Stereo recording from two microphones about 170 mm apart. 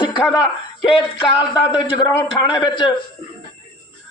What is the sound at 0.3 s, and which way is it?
A man's voice, 25° left (ahead or behind).